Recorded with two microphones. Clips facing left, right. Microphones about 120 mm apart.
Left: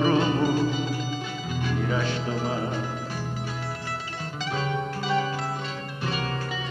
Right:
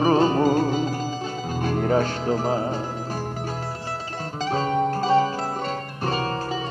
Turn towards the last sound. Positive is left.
turn(degrees=-40)  # may be behind; listen again after turning